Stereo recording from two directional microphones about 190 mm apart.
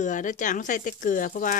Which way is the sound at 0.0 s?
40° left (ahead or behind).